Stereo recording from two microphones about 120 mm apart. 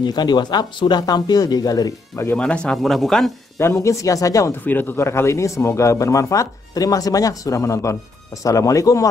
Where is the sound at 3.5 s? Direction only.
25° left (ahead or behind).